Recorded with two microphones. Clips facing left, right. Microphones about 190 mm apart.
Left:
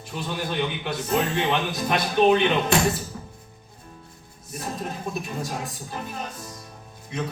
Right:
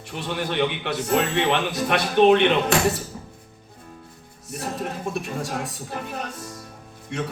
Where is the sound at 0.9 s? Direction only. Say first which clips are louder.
Right 2 dB; 70° right (ahead or behind).